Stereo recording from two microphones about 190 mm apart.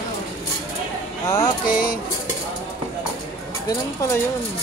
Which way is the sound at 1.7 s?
50° left (ahead or behind).